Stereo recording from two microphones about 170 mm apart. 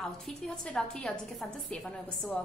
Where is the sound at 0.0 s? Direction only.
5° left (ahead or behind).